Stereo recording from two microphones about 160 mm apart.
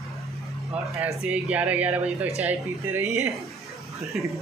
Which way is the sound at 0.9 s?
20° right (ahead or behind).